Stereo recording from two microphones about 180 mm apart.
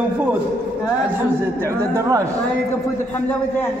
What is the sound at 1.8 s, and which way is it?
Speech, 15° right (ahead or behind).